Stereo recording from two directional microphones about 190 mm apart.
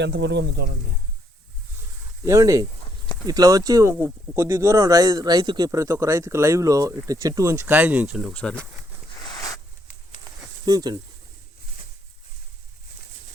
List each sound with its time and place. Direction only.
0.0 s speech: 65° right (ahead or behind)
2.2 s speech: 15° right (ahead or behind)
8.3 s speech: 5° left (ahead or behind)
9.1 s a sound: 20° left (ahead or behind)
10.7 s speech: 20° right (ahead or behind)